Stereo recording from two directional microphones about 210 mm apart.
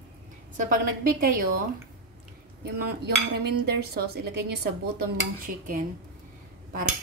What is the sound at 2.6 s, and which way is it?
Dishes, 50° right (ahead or behind).